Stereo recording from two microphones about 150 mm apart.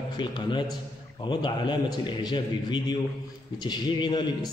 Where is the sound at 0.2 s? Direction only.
30° left (ahead or behind).